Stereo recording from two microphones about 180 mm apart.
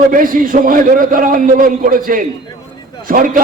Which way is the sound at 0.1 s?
50° right (ahead or behind).